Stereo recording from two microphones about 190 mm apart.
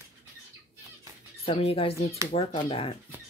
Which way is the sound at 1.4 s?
30° left (ahead or behind).